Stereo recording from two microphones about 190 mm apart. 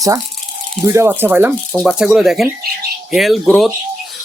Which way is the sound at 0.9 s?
15° right (ahead or behind).